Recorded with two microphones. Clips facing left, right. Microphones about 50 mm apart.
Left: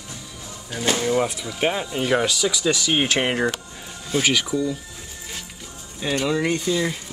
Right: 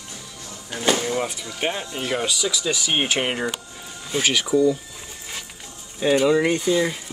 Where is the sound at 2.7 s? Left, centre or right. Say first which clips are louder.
Left 1 dB; centre.